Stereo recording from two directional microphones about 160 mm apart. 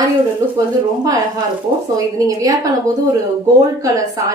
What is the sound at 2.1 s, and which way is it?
Speech, 20° right (ahead or behind).